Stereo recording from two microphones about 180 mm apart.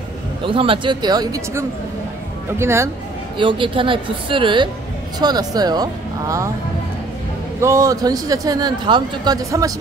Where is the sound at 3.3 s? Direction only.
25° right (ahead or behind).